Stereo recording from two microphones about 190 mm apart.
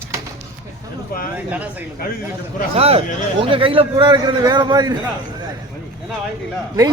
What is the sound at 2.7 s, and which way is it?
Speech, 30° right (ahead or behind).